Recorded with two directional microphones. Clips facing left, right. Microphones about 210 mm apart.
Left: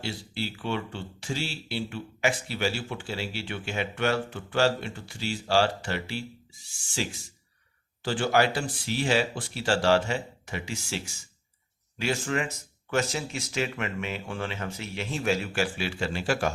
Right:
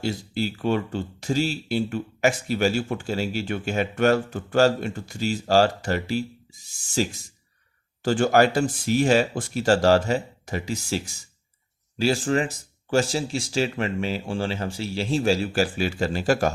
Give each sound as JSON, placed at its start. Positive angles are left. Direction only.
{"t": 0.0, "sound": "speech", "side_deg": -45}